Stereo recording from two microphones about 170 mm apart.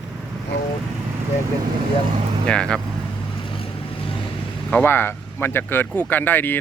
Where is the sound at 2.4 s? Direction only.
5° left (ahead or behind).